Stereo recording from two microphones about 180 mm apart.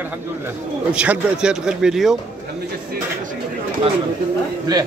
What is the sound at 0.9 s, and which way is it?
Speech, 5° right (ahead or behind).